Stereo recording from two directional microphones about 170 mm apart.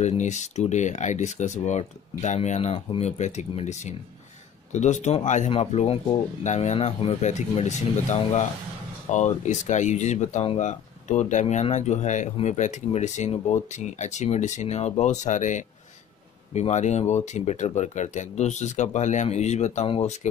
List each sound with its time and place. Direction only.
0.0 s speech: 45° left (ahead or behind)